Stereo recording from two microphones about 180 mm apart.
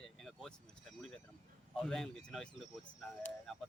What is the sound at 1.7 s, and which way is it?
Speech, centre (ahead or behind).